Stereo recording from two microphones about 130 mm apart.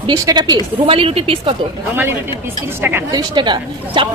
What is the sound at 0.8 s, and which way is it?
Speech, 45° right (ahead or behind).